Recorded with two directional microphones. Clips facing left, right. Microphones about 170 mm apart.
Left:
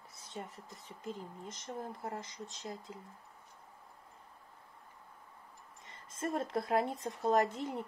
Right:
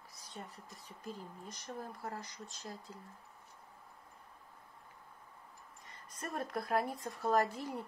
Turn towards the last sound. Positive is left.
turn(degrees=20)  # may be behind; listen again after turning